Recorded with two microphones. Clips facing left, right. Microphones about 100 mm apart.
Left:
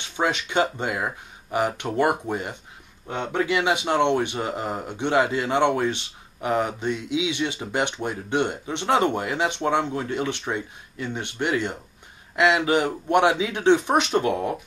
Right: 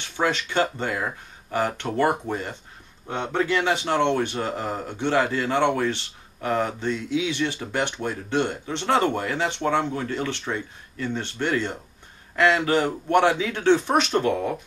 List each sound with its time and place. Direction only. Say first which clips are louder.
0.0 s speech: even; 20° left (ahead or behind)